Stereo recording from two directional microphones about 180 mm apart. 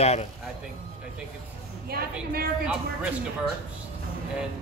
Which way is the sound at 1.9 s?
60° right (ahead or behind).